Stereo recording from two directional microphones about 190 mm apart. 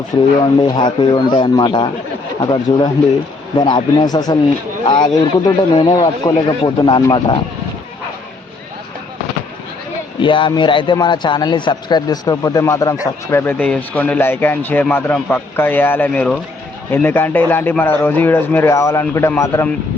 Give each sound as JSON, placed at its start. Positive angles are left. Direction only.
{"t": 0.1, "sound": "a man's voice", "side_deg": 20}
{"t": 10.2, "sound": "a man's voice", "side_deg": 25}